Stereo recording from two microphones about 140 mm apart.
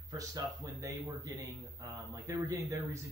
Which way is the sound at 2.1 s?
25° right (ahead or behind).